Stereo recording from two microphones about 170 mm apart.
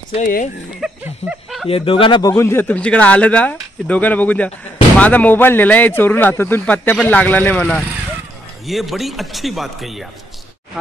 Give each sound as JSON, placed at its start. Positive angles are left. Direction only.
{"t": 0.2, "sound": "speech", "side_deg": 50}
{"t": 0.7, "sound": "a sound", "side_deg": -5}
{"t": 1.7, "sound": "speech", "side_deg": 30}
{"t": 2.3, "sound": "speech", "side_deg": 15}
{"t": 8.6, "sound": "a man's voice", "side_deg": 0}